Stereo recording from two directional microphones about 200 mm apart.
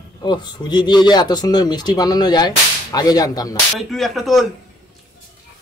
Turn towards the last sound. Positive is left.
turn(degrees=0)  # may be behind; listen again after turning